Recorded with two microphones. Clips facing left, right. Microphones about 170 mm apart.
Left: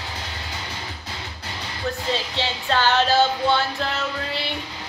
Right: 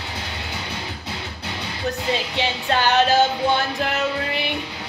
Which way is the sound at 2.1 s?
15° right (ahead or behind).